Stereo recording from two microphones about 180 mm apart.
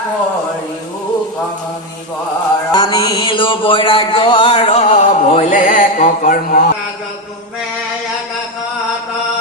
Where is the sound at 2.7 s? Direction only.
25° left (ahead or behind); by 6.7 s 50° left (ahead or behind).